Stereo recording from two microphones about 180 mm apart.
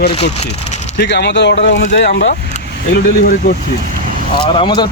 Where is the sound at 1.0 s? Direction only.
70° left (ahead or behind).